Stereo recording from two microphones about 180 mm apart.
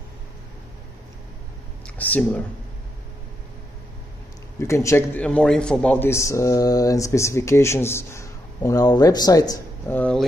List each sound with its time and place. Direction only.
2.0 s speech: 10° left (ahead or behind)
4.6 s speech: 15° left (ahead or behind)
9.9 s speech: 5° left (ahead or behind)